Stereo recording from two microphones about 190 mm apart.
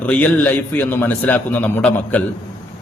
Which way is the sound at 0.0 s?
10° left (ahead or behind).